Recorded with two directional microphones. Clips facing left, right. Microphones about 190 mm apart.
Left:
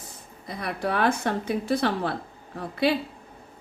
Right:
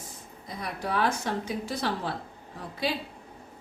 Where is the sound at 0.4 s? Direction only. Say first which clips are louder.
Left 5 dB; 65° left (ahead or behind).